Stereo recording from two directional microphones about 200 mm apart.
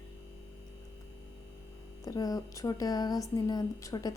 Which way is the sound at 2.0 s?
20° left (ahead or behind).